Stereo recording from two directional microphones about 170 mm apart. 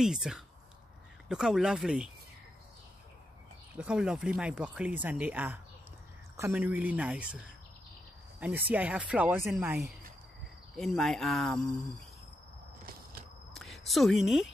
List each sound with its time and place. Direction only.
0.0 s speech: 5° right (ahead or behind)
3.7 s speech: 5° right (ahead or behind)
13.6 s a sound: centre (ahead or behind)